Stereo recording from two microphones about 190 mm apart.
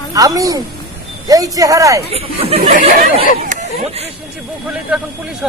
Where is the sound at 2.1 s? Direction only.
30° right (ahead or behind).